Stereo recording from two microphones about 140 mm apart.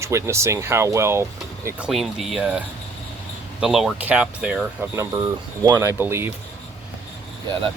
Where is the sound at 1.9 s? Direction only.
Centre (ahead or behind).